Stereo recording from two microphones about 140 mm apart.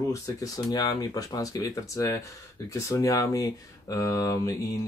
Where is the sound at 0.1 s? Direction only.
25° left (ahead or behind).